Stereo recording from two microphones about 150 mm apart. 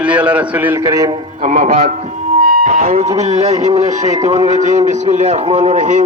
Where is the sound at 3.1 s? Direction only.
45° right (ahead or behind).